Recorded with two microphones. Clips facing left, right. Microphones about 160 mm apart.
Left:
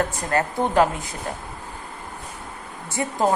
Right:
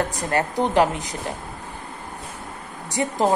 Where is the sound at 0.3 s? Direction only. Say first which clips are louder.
Right 1 dB; 20° right (ahead or behind).